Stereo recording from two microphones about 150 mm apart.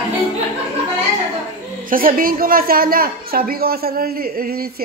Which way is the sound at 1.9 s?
70° right (ahead or behind).